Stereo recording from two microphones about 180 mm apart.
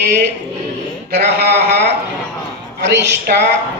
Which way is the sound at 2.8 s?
70° right (ahead or behind).